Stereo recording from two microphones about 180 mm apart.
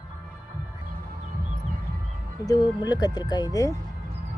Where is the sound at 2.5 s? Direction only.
20° left (ahead or behind).